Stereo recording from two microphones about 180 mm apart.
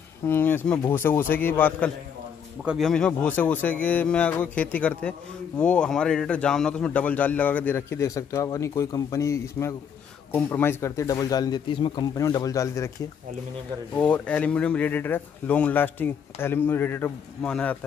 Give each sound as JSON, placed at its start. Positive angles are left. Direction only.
{"t": 0.3, "sound": "a man's voice", "side_deg": 10}
{"t": 2.6, "sound": "a man's voice", "side_deg": -5}
{"t": 13.9, "sound": "a man's voice", "side_deg": 5}